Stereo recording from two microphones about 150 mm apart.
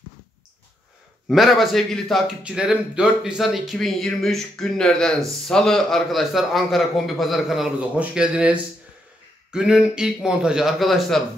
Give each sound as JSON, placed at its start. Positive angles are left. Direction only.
{"t": 1.3, "sound": "speech", "side_deg": 0}